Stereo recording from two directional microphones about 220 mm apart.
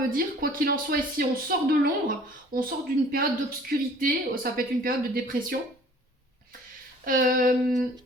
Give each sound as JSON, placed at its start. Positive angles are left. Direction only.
{"t": 0.1, "sound": "speech", "side_deg": -40}
{"t": 7.0, "sound": "speech", "side_deg": -40}